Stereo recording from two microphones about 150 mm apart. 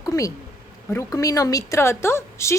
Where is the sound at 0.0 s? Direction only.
25° left (ahead or behind).